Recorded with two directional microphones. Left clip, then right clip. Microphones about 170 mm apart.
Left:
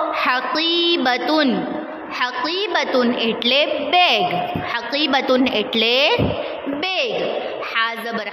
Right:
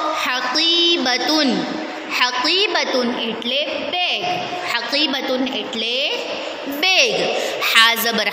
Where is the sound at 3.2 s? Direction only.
20° left (ahead or behind).